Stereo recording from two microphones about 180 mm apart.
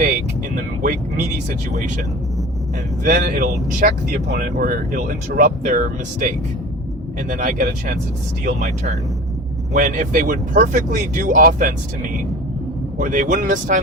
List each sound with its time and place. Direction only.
0.5 s speech: 50° right (ahead or behind)
3.0 s speech: 50° right (ahead or behind)
13.0 s speech: 45° right (ahead or behind)